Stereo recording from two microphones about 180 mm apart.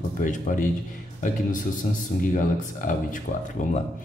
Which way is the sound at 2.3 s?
50° left (ahead or behind).